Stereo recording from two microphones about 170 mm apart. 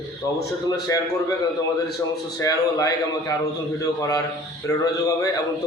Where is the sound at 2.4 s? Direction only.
20° left (ahead or behind).